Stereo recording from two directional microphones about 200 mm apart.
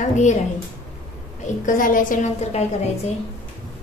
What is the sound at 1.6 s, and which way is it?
A woman's voice, 40° left (ahead or behind).